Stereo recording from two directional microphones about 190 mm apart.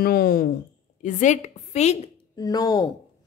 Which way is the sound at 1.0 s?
40° left (ahead or behind).